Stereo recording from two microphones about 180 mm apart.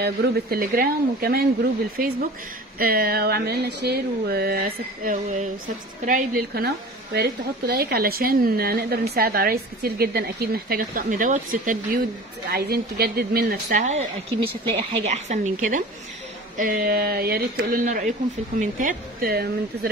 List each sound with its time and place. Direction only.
0.0 s a woman's voice: 55° right (ahead or behind)
2.8 s a woman's voice: 55° right (ahead or behind)